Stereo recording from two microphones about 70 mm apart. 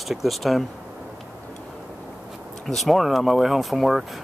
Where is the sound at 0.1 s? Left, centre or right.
Centre.